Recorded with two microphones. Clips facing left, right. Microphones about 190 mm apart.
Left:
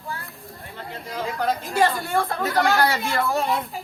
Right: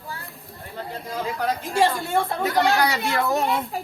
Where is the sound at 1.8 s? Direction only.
25° right (ahead or behind).